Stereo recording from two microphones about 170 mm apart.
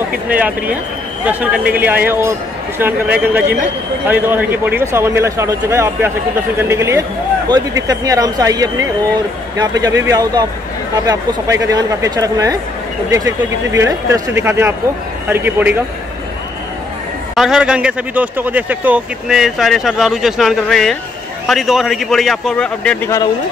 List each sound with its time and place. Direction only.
0.3 s a man's voice: 10° right (ahead or behind)
17.4 s speech: 5° right (ahead or behind)